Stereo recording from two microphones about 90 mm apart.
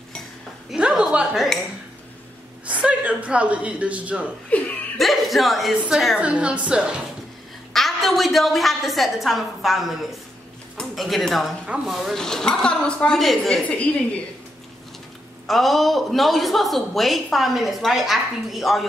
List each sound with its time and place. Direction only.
0.7 s a sound: 10° right (ahead or behind)
2.6 s speech: 15° right (ahead or behind)
4.5 s laughter: 15° left (ahead or behind)
4.9 s speech: centre (ahead or behind)
6.1 s a woman's voice: 15° right (ahead or behind)
7.7 s speech: centre (ahead or behind)
11.6 s speech: 10° right (ahead or behind)
13.7 s a woman's voice: 15° left (ahead or behind)
15.4 s speech: centre (ahead or behind)